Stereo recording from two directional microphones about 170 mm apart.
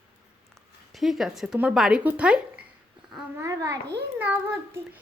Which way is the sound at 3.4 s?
20° right (ahead or behind).